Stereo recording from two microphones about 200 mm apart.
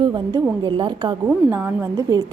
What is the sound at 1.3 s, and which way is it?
Speech, 10° right (ahead or behind).